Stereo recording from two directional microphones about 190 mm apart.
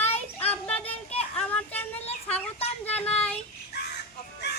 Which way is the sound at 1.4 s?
5° left (ahead or behind).